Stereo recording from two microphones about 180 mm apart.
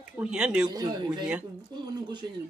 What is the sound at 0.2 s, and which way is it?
Speech, 5° right (ahead or behind).